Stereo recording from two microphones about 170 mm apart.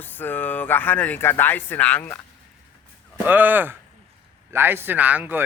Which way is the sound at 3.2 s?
10° right (ahead or behind).